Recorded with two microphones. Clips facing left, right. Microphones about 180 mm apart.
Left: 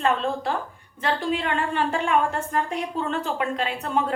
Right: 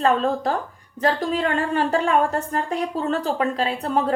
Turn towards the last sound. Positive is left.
turn(degrees=-35)  # may be behind; listen again after turning